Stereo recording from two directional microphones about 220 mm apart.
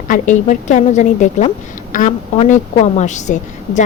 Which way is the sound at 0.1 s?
35° left (ahead or behind).